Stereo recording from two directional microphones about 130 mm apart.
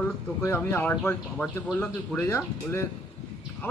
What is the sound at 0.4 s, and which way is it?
A man's voice, 15° left (ahead or behind).